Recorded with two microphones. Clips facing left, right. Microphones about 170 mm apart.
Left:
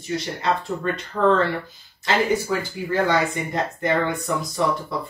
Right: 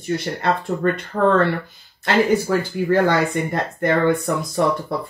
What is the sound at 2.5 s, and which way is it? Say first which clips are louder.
Speech: right 6 dB; 60° right (ahead or behind).